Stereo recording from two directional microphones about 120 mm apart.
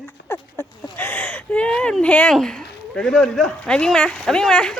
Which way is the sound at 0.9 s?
15° left (ahead or behind).